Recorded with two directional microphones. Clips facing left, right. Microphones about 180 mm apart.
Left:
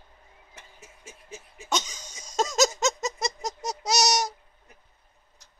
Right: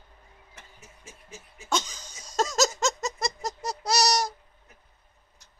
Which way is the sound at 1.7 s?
Centre (ahead or behind).